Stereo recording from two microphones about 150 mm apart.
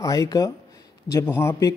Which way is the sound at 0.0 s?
20° left (ahead or behind).